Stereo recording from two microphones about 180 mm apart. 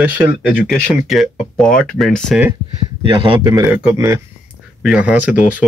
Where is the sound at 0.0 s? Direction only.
10° right (ahead or behind).